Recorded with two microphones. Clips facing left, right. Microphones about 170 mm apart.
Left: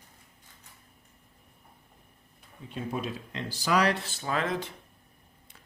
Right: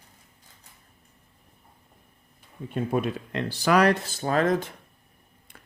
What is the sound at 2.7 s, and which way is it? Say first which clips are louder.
Speech: right 7 dB; 55° right (ahead or behind).